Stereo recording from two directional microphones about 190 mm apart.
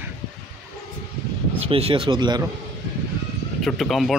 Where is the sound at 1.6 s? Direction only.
30° right (ahead or behind).